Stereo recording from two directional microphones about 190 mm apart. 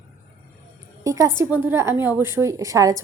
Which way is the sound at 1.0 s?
15° right (ahead or behind).